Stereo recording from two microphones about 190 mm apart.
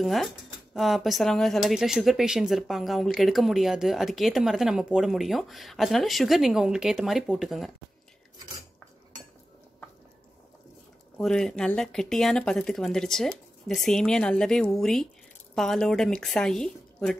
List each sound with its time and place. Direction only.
0.0 s speech: centre (ahead or behind)
11.1 s speech: 5° left (ahead or behind)